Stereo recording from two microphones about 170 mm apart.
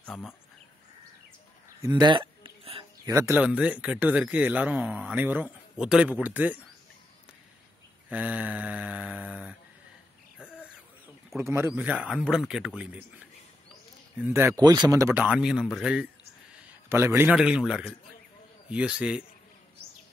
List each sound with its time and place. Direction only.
0.0 s speech: centre (ahead or behind)
1.8 s a sound: 25° right (ahead or behind)
3.1 s speech: 15° right (ahead or behind)
8.1 s mantra: 10° right (ahead or behind)
11.3 s speech: 15° right (ahead or behind)
14.1 s speech: 10° right (ahead or behind)